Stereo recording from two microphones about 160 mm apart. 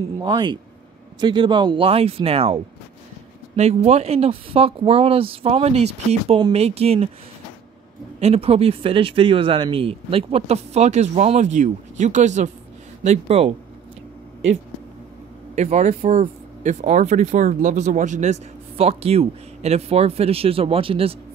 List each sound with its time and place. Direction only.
0.2 s speech: 30° right (ahead or behind)
8.2 s speech: 40° right (ahead or behind)
15.5 s speech: 45° right (ahead or behind)